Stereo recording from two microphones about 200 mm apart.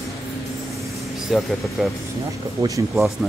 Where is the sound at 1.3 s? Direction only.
Centre (ahead or behind).